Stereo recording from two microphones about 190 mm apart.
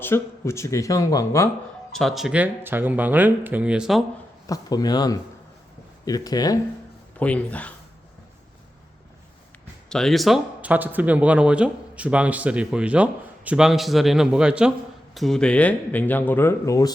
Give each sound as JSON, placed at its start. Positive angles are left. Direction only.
{"t": 0.0, "sound": "speech", "side_deg": 15}
{"t": 1.9, "sound": "speech", "side_deg": 0}
{"t": 4.4, "sound": "speech", "side_deg": 20}
{"t": 7.2, "sound": "speech", "side_deg": 10}
{"t": 9.9, "sound": "speech", "side_deg": 0}